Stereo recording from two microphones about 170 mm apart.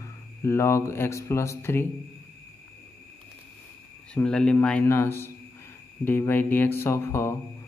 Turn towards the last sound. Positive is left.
turn(degrees=15)  # may be behind; listen again after turning